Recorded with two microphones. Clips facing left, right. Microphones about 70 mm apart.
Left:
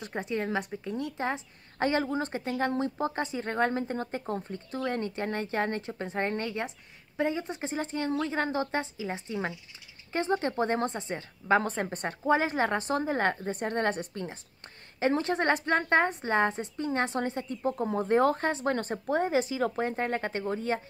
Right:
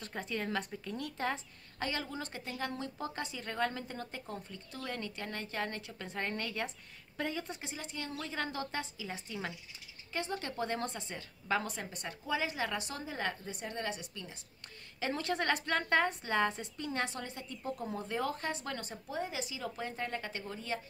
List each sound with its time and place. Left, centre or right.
0.0 s a woman's voice: left
1.8 s a woman's voice: left
7.6 s speech: left
15.0 s speech: left